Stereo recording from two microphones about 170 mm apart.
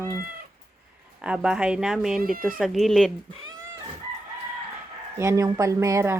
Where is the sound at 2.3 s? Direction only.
55° right (ahead or behind).